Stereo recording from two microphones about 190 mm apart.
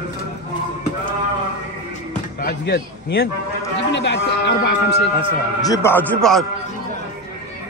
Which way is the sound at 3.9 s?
70° left (ahead or behind).